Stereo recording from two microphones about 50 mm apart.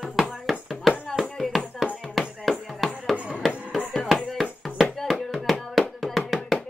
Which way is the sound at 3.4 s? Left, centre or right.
Centre.